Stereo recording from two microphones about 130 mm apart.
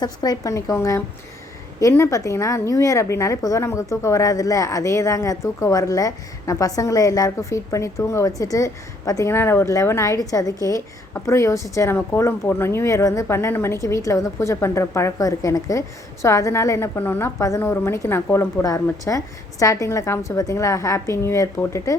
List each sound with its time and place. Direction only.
0.0 s a woman's voice: 30° left (ahead or behind)